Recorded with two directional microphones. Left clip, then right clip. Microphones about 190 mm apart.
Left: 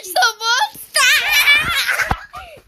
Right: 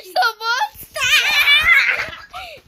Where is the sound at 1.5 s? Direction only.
Centre (ahead or behind).